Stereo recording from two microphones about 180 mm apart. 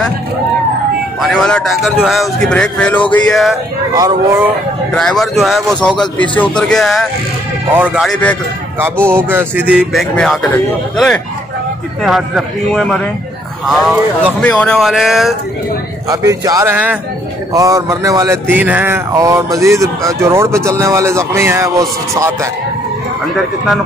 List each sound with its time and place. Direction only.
1.2 s speech: 5° left (ahead or behind)
4.9 s speech: centre (ahead or behind)
16.1 s a man's voice: 20° right (ahead or behind)